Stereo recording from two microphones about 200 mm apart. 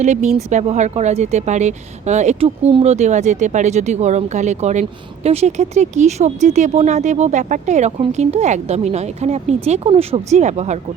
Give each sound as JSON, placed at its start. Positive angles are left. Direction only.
{"t": 0.0, "sound": "a woman's voice", "side_deg": -35}